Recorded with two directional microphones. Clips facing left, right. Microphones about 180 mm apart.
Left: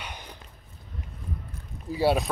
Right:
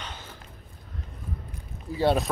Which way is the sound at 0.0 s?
15° left (ahead or behind).